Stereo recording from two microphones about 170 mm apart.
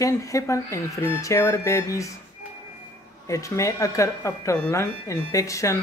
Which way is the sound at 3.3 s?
20° left (ahead or behind).